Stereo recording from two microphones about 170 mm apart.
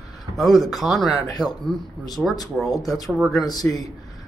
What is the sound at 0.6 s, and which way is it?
Speech, centre (ahead or behind).